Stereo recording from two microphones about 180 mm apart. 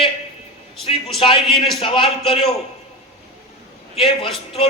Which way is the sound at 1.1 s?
30° left (ahead or behind).